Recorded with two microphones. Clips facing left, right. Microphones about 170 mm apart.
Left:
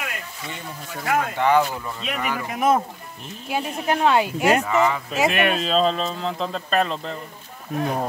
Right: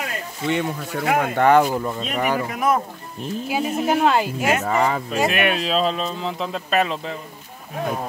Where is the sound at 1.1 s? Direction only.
50° right (ahead or behind).